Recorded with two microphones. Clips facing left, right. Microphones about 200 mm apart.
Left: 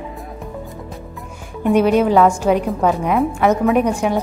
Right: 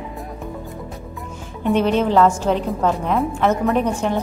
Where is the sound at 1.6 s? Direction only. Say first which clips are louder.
Left 4 dB; 10° left (ahead or behind).